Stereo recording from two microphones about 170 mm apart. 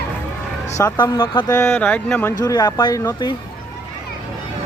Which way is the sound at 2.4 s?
25° left (ahead or behind).